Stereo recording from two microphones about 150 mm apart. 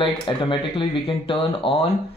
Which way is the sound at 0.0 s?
35° left (ahead or behind).